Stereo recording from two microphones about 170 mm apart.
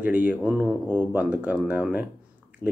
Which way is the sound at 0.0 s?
10° right (ahead or behind).